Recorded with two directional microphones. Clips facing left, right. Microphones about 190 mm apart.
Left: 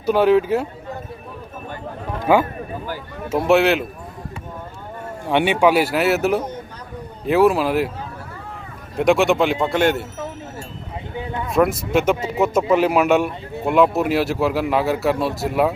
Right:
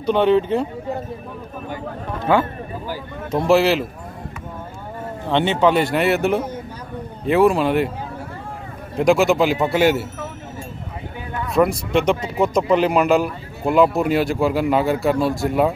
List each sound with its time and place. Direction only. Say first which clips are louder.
0.0 s a man's voice: left 1 dB; 5° left (ahead or behind)
2.3 s a man's voice: left 2 dB; 10° left (ahead or behind)
5.2 s a man's voice: left 1 dB; 10° left (ahead or behind)
8.9 s a man's voice: right 1 dB; centre (ahead or behind)
11.1 s a sound: left 2 dB; 20° left (ahead or behind)
11.5 s a man's voice: even; centre (ahead or behind)